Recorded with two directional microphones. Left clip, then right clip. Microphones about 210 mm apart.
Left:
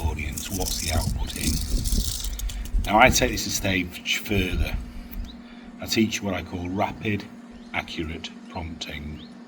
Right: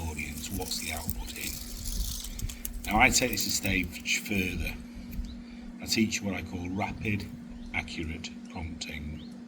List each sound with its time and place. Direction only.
0.0 s vehicle: 10° left (ahead or behind)
1.9 s vehicle: 35° left (ahead or behind)
2.8 s a man's voice: 10° left (ahead or behind)
5.8 s a man's voice: 10° left (ahead or behind)